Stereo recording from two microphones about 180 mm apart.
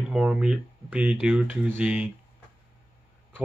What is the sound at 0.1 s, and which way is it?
Speech, 5° right (ahead or behind).